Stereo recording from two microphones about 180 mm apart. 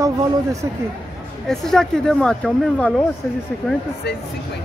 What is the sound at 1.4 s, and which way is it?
Speech, 5° left (ahead or behind).